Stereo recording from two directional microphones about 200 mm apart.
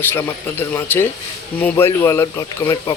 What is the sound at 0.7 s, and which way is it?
Speech, 10° left (ahead or behind).